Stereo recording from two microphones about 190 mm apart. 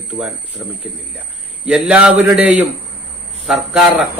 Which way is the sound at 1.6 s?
5° right (ahead or behind).